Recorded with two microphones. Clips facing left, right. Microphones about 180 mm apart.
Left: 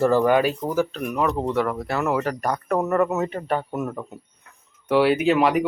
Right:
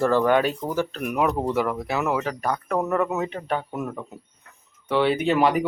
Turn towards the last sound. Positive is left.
turn(degrees=0)  # may be behind; listen again after turning